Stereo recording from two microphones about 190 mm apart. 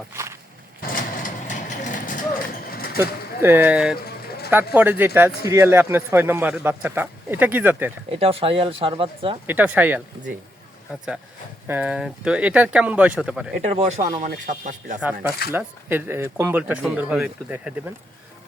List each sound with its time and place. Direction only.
0.1 s a sound: 15° right (ahead or behind)
0.9 s vehicle: 45° left (ahead or behind)
2.6 s a sound: 50° left (ahead or behind)
3.0 s speech: 10° right (ahead or behind)
3.9 s vehicle: 55° left (ahead or behind)
4.7 s speech: 10° right (ahead or behind)
8.1 s speech: 30° right (ahead or behind)
9.5 s speech: 10° right (ahead or behind)
11.7 s speech: 5° right (ahead or behind)
13.6 s speech: 35° right (ahead or behind)
15.5 s speech: 10° right (ahead or behind)